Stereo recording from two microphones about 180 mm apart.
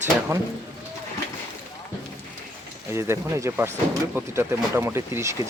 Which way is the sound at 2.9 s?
15° right (ahead or behind).